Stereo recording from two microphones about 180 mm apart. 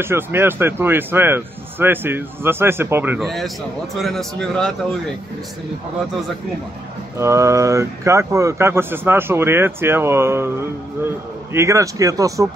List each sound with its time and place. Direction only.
0.0 s speech: 15° right (ahead or behind)
3.3 s a man's voice: centre (ahead or behind)
7.2 s speech: 15° right (ahead or behind)
11.5 s speech: 15° right (ahead or behind)